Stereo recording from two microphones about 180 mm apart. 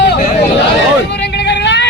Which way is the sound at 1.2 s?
70° left (ahead or behind).